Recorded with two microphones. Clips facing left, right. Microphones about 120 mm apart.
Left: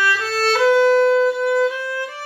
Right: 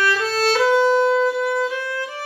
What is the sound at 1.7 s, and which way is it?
Violin, 10° left (ahead or behind).